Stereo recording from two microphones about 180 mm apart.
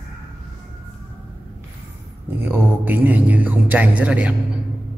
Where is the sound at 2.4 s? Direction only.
10° right (ahead or behind).